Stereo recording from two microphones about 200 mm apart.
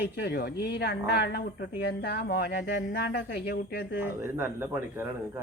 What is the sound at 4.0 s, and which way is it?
A man's voice, 10° right (ahead or behind).